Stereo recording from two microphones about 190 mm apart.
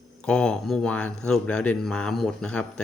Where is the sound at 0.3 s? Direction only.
5° left (ahead or behind).